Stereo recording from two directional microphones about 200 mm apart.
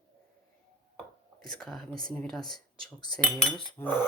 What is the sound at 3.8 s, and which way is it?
Speech, 10° left (ahead or behind).